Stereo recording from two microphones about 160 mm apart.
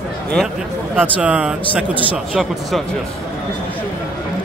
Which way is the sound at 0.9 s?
10° right (ahead or behind).